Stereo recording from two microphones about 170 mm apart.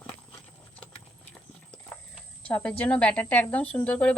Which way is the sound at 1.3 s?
5° left (ahead or behind).